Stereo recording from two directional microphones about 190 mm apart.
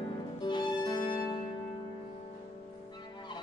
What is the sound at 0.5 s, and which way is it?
Music, 25° left (ahead or behind).